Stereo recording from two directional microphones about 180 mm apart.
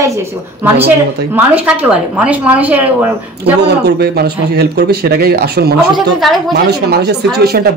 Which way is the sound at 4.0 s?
65° right (ahead or behind).